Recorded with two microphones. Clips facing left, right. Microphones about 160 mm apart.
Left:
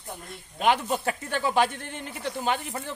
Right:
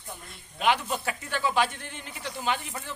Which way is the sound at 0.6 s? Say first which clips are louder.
Left 2 dB; 45° left (ahead or behind).